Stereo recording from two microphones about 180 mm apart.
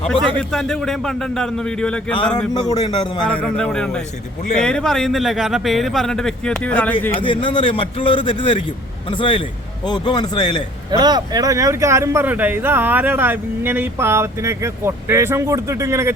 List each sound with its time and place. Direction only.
0.5 s a man's voice: centre (ahead or behind)
2.1 s speech: 25° left (ahead or behind)
3.2 s a man's voice: 5° left (ahead or behind)
7.1 s speech: 30° left (ahead or behind)
10.9 s a man's voice: 20° right (ahead or behind)